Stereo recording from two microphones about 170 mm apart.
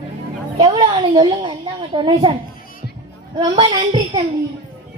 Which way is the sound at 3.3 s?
30° right (ahead or behind).